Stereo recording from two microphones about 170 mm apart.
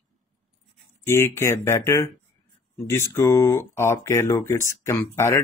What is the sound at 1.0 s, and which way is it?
Speech, 15° left (ahead or behind).